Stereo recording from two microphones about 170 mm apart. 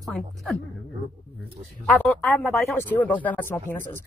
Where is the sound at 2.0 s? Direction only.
10° left (ahead or behind).